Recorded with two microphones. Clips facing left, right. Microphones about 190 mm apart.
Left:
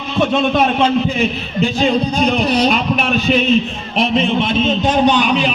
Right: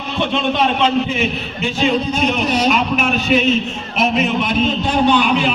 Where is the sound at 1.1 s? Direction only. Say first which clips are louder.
Left 2 dB; 35° left (ahead or behind); by 5.5 s 20° left (ahead or behind).